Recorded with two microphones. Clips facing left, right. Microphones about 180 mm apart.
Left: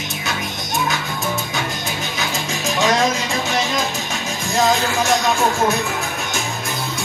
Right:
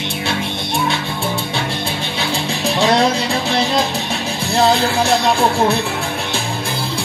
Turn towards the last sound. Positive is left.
turn(degrees=-30)  # may be behind; listen again after turning